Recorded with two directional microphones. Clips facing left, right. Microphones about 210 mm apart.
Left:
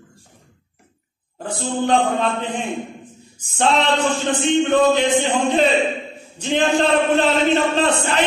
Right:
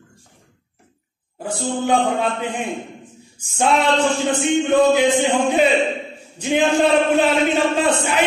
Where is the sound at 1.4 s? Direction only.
10° right (ahead or behind).